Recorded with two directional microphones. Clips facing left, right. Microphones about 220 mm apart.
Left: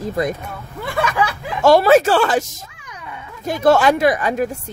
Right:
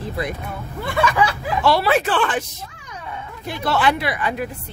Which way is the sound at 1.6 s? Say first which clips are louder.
Left 7 dB; 45° left (ahead or behind).